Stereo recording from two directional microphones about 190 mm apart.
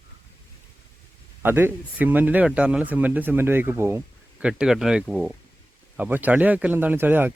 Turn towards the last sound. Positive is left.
turn(degrees=-10)  # may be behind; listen again after turning